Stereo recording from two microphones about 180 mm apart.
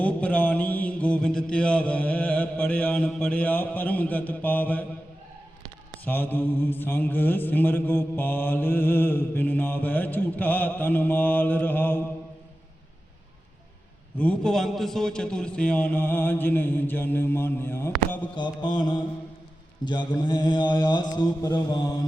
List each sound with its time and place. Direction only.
0.0 s mantra: 10° left (ahead or behind)
6.1 s mantra: 10° left (ahead or behind)
14.2 s mantra: 5° left (ahead or behind)
18.3 s mantra: 25° left (ahead or behind)